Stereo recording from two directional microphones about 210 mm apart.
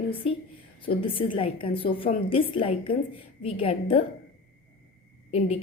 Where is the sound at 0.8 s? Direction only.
25° left (ahead or behind).